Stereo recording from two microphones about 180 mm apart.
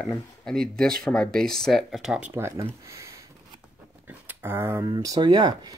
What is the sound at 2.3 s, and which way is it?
Speech, 15° right (ahead or behind).